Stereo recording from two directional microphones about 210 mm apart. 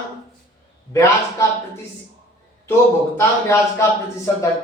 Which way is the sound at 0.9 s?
15° left (ahead or behind).